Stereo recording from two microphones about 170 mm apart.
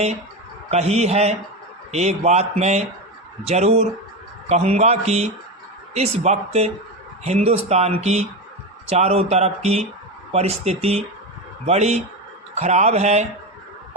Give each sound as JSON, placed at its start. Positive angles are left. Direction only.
{"t": 0.7, "sound": "speech", "side_deg": -40}